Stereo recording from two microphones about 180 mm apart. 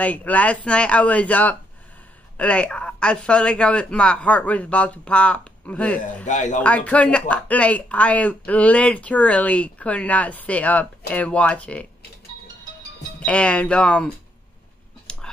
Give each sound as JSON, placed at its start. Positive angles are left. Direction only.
{"t": 0.0, "sound": "speech", "side_deg": 10}
{"t": 6.2, "sound": "speech", "side_deg": 45}
{"t": 6.6, "sound": "speech", "side_deg": 5}
{"t": 13.2, "sound": "speech", "side_deg": 5}
{"t": 15.1, "sound": "a sound", "side_deg": 5}